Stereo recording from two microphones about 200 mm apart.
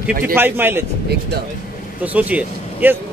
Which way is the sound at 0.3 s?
10° right (ahead or behind).